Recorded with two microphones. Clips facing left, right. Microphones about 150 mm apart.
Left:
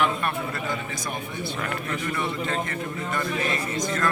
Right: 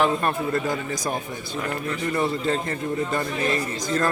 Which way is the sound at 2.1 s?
35° right (ahead or behind).